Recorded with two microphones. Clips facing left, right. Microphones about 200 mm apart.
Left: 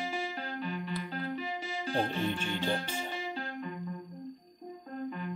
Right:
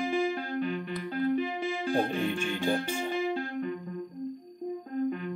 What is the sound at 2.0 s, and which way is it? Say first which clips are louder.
Music: right 1 dB; 50° right (ahead or behind).